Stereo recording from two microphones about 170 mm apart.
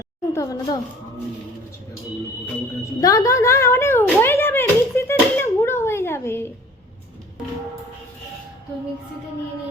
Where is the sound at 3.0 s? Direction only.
20° left (ahead or behind).